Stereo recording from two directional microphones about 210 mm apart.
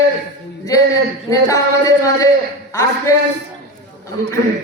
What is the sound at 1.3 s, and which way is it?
A man's voice, 15° left (ahead or behind).